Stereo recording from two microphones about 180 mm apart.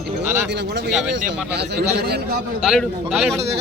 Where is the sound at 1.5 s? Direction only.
65° right (ahead or behind).